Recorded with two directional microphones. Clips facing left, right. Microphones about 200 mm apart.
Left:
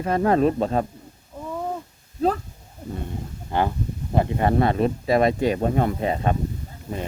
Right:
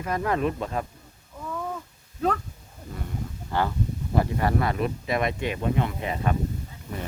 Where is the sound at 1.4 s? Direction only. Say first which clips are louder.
Left 4 dB; 25° left (ahead or behind).